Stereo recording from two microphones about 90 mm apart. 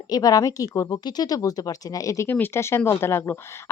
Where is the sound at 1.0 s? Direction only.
45° left (ahead or behind).